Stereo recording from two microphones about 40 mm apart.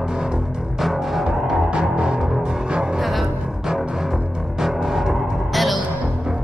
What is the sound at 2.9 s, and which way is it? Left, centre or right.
Music, centre.